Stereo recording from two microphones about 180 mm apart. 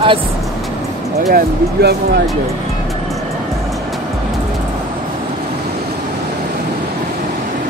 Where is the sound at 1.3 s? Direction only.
65° right (ahead or behind).